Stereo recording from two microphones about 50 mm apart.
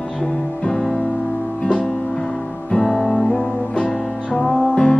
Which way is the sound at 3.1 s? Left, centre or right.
Centre.